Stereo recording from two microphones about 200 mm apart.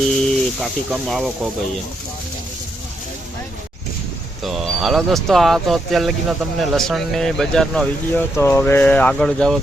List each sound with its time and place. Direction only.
0.1 s speech: centre (ahead or behind)
4.4 s speech: centre (ahead or behind)